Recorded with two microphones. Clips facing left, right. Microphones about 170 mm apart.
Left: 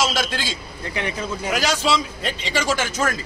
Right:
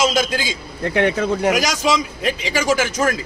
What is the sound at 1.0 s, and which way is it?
Speech, 75° right (ahead or behind).